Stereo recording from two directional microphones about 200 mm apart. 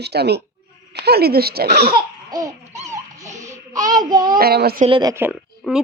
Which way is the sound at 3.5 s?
40° right (ahead or behind).